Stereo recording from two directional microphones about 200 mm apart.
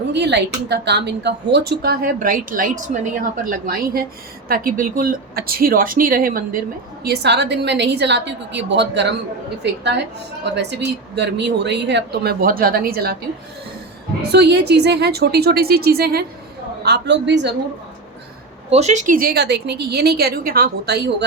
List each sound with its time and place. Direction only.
0.1 s a woman's voice: 60° right (ahead or behind)
14.3 s a woman's voice: 55° right (ahead or behind)
18.7 s a woman's voice: 35° right (ahead or behind); by 21.2 s 55° right (ahead or behind)